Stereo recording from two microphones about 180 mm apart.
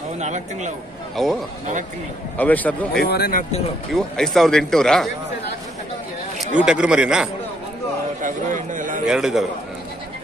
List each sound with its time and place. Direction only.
0.2 s a man's voice: 40° right (ahead or behind)
1.1 s speech: centre (ahead or behind)
3.0 s speech: 55° left (ahead or behind)
3.9 s speech: centre (ahead or behind)
6.6 s speech: 5° right (ahead or behind)
8.7 s a man's voice: 45° right (ahead or behind)
9.0 s speech: 5° right (ahead or behind)